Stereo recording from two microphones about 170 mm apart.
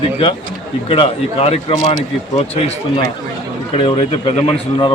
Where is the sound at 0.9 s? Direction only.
35° left (ahead or behind).